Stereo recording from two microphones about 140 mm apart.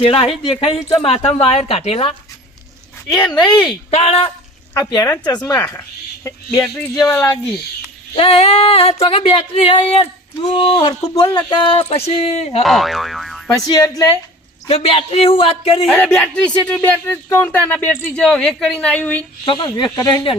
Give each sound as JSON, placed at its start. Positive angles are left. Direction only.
{"t": 0.0, "sound": "speech", "side_deg": 45}
{"t": 3.3, "sound": "female singing", "side_deg": 30}
{"t": 3.9, "sound": "speech", "side_deg": 45}
{"t": 4.7, "sound": "speech", "side_deg": 20}
{"t": 5.5, "sound": "speech", "side_deg": 15}
{"t": 6.9, "sound": "speech", "side_deg": 20}
{"t": 8.1, "sound": "female singing", "side_deg": 40}
{"t": 12.6, "sound": "speech", "side_deg": 0}
{"t": 13.7, "sound": "speech", "side_deg": 25}
{"t": 14.7, "sound": "speech", "side_deg": 45}
{"t": 15.9, "sound": "speech", "side_deg": 5}
{"t": 19.5, "sound": "female singing", "side_deg": 35}